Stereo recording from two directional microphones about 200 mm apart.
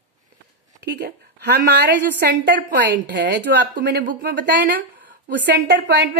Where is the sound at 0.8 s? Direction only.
55° right (ahead or behind).